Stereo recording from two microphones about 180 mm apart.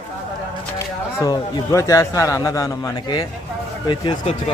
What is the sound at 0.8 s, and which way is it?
Speech, 20° left (ahead or behind).